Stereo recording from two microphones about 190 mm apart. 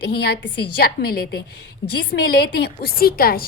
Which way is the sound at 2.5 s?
55° left (ahead or behind).